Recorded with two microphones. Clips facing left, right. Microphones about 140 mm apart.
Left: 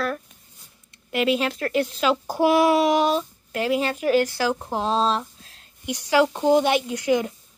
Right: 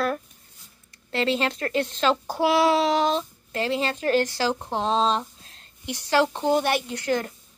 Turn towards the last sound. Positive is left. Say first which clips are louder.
# left 4 dB
turn(degrees=10)  # may be behind; listen again after turning